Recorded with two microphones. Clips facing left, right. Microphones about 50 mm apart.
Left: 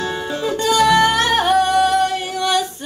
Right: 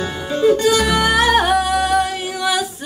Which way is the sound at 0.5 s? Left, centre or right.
Centre.